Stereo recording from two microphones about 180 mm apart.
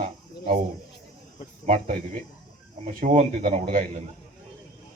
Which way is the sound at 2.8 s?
45° right (ahead or behind).